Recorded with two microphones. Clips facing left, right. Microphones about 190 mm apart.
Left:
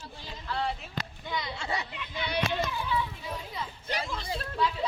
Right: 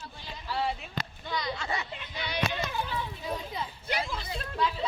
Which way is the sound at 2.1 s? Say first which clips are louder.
Left 3 dB; 55° left (ahead or behind).